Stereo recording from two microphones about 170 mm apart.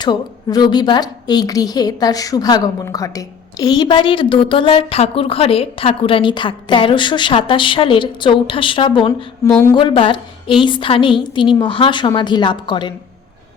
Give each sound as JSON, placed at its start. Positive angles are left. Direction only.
{"t": 0.0, "sound": "a woman's voice", "side_deg": 25}
{"t": 9.5, "sound": "speech", "side_deg": 10}
{"t": 9.7, "sound": "a woman's voice", "side_deg": 30}